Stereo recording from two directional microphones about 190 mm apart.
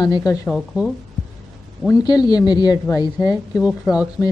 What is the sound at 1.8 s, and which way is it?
Speech, 20° left (ahead or behind).